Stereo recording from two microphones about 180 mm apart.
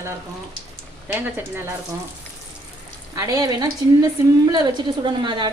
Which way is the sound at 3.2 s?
20° right (ahead or behind).